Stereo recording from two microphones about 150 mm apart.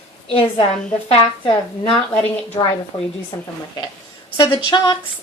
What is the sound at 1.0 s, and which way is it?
Speech, 40° left (ahead or behind).